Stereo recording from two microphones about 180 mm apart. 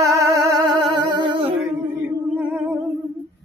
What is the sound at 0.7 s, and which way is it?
Humming, 25° right (ahead or behind).